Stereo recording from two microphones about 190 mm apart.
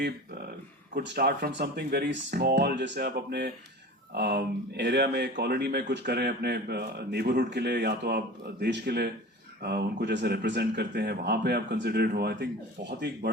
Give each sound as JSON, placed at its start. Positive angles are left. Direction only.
{"t": 0.9, "sound": "speech", "side_deg": -55}